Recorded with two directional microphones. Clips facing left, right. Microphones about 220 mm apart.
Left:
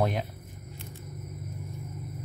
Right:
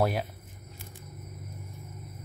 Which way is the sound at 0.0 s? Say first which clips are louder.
Right 1 dB; 5° right (ahead or behind).